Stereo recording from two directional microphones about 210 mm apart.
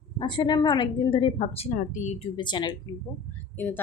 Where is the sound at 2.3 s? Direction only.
20° left (ahead or behind).